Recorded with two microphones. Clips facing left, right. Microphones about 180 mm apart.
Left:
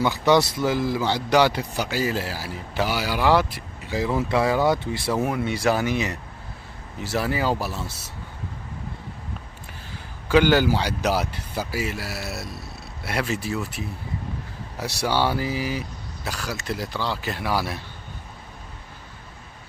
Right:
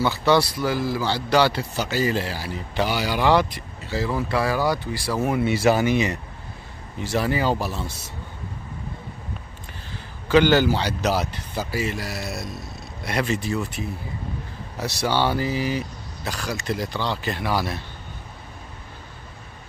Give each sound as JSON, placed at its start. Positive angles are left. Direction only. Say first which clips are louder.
{"t": 0.0, "sound": "a man's voice", "louder": "even", "side_deg": 15}
{"t": 5.2, "sound": "speech", "louder": "right 6 dB", "side_deg": -5}
{"t": 10.2, "sound": "a man's voice", "louder": "right 1 dB", "side_deg": 10}